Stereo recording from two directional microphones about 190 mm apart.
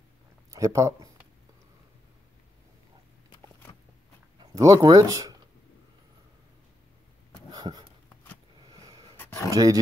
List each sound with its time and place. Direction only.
0.5 s speech: 15° right (ahead or behind)
4.4 s speech: 20° right (ahead or behind)
7.5 s dog: 20° right (ahead or behind)
8.7 s a sound: 20° right (ahead or behind)
9.1 s a sound: 10° left (ahead or behind)
9.5 s speech: 20° right (ahead or behind)